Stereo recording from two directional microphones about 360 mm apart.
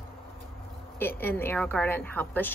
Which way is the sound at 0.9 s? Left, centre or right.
Centre.